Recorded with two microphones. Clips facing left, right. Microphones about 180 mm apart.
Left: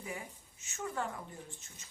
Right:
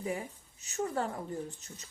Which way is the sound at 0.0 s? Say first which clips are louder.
Right 8 dB; 35° right (ahead or behind).